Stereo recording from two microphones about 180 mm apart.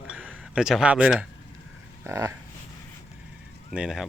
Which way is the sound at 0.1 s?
5° right (ahead or behind).